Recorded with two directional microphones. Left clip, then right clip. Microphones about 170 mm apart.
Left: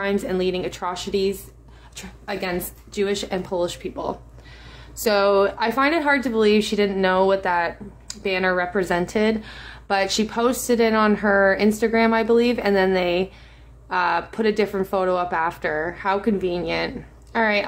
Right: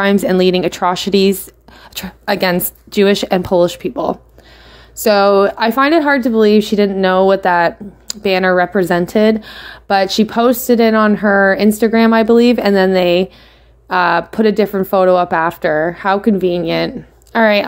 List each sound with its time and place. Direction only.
0.0 s speech: 55° right (ahead or behind)
2.0 s speech: 65° right (ahead or behind); by 17.6 s 40° right (ahead or behind)